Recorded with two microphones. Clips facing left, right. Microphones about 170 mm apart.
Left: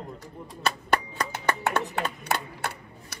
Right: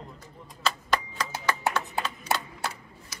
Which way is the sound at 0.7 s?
60° left (ahead or behind).